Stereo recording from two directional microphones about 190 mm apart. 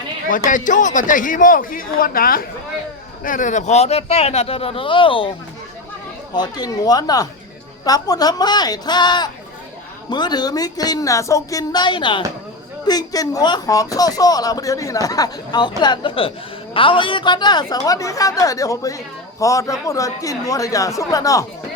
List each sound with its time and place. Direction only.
0.3 s a man's voice: 45° left (ahead or behind); by 5.3 s 25° left (ahead or behind)
6.3 s a woman's voice: 20° left (ahead or behind)